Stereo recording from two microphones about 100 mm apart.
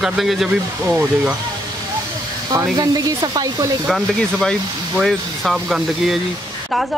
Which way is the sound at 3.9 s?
5° left (ahead or behind).